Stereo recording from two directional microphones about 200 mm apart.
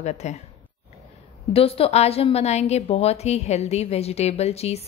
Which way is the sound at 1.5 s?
30° left (ahead or behind).